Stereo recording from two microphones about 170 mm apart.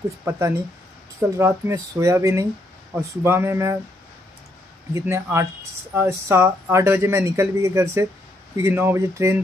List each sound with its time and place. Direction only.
0.2 s speech: 15° right (ahead or behind)
4.9 s speech: 15° right (ahead or behind)